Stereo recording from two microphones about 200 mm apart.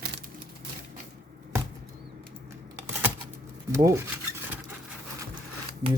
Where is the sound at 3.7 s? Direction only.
15° right (ahead or behind).